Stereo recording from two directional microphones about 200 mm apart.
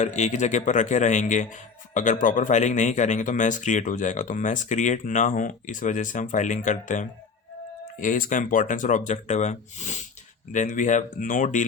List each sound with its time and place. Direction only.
0.0 s a man's voice: 35° left (ahead or behind)